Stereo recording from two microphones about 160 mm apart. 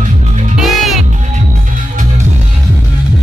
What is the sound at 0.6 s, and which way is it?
Music, centre (ahead or behind).